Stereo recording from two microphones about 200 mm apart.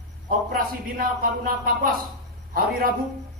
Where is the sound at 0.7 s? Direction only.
45° right (ahead or behind).